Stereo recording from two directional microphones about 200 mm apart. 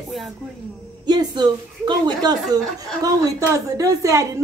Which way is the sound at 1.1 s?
20° right (ahead or behind).